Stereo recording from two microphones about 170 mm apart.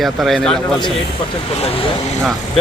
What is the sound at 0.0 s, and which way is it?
Speech, centre (ahead or behind).